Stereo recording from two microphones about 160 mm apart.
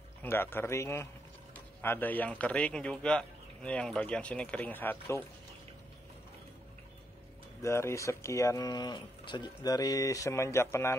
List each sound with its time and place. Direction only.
0.2 s speech: 15° left (ahead or behind)
7.6 s speech: 15° left (ahead or behind)